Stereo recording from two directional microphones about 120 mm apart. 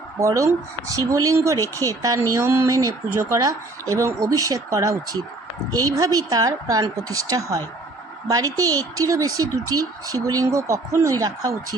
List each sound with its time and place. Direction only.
0.2 s speech: 25° right (ahead or behind)